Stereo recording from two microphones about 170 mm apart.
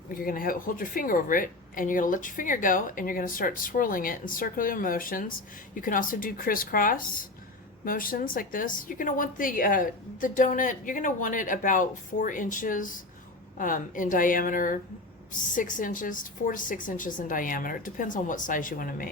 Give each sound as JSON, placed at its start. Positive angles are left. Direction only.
{"t": 0.1, "sound": "a woman's voice", "side_deg": 55}